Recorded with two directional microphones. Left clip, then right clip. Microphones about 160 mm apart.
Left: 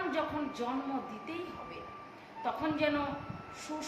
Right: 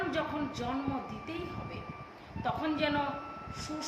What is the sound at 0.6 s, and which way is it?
Speech, 15° right (ahead or behind).